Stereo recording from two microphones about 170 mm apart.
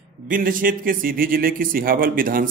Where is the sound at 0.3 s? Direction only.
55° right (ahead or behind).